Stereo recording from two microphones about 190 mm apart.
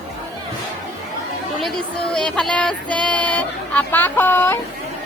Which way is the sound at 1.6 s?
Centre (ahead or behind).